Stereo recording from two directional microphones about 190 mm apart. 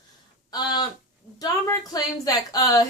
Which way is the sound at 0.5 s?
20° left (ahead or behind).